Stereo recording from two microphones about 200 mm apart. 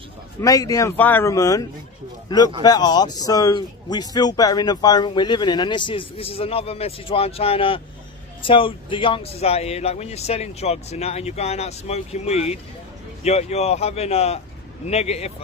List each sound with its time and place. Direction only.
0.4 s speech: 15° left (ahead or behind)
2.6 s speech: 20° left (ahead or behind)